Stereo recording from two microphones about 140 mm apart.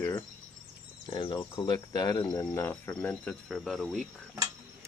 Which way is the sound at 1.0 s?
35° left (ahead or behind).